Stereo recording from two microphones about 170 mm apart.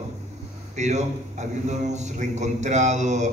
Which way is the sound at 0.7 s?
45° right (ahead or behind).